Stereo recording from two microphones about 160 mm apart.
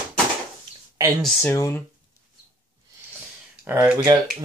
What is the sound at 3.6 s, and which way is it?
Speech, 10° right (ahead or behind).